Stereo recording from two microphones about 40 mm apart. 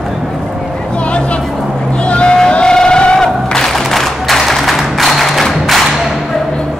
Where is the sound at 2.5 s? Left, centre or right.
Left.